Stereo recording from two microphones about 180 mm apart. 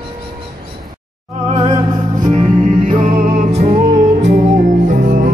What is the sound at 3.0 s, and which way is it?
Music, 55° right (ahead or behind).